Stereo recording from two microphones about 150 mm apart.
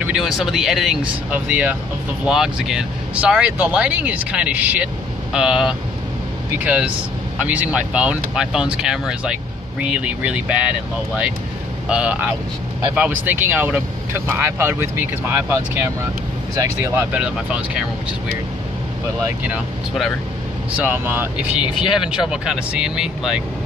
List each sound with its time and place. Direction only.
0.0 s speech: 5° right (ahead or behind)
11.9 s speech: 10° right (ahead or behind)
17.1 s speech: 10° right (ahead or behind)
19.2 s speech: 10° right (ahead or behind)
20.7 s speech: 10° right (ahead or behind)